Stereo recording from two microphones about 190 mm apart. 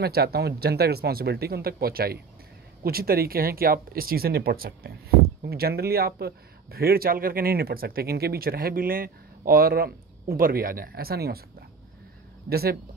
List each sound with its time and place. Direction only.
0.0 s speech: 55° right (ahead or behind)
12.4 s speech: 55° right (ahead or behind)